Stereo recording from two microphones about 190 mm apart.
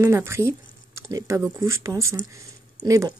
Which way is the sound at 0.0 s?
15° right (ahead or behind).